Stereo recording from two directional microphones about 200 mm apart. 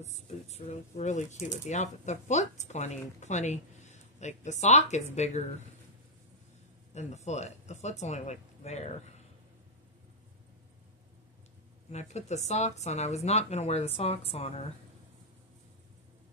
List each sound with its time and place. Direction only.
0.0 s speech: 35° left (ahead or behind)
6.9 s speech: 35° left (ahead or behind)
11.9 s speech: 35° left (ahead or behind)